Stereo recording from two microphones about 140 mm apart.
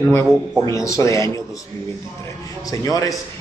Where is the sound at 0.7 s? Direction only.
20° left (ahead or behind).